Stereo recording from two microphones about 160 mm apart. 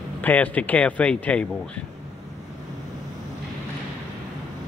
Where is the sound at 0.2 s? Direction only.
10° left (ahead or behind).